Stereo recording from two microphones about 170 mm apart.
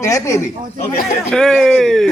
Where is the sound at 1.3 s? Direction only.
5° left (ahead or behind).